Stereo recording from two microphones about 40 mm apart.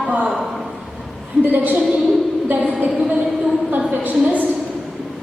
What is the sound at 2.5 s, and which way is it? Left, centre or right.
Speech, right.